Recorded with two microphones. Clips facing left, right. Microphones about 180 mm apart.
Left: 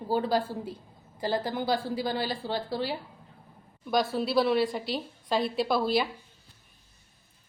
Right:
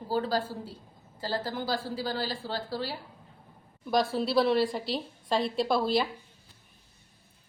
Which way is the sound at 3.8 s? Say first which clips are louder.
Even; centre (ahead or behind).